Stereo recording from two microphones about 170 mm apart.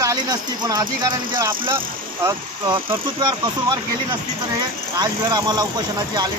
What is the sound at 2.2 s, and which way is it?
Speech, 25° right (ahead or behind).